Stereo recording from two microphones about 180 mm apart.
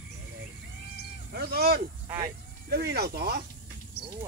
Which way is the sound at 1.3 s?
60° right (ahead or behind).